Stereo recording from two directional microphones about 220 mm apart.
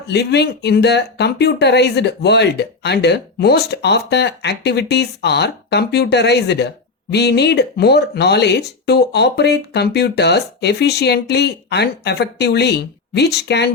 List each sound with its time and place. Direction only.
0.1 s speech: 50° left (ahead or behind)